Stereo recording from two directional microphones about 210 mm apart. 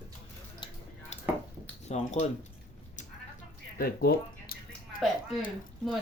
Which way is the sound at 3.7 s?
45° left (ahead or behind).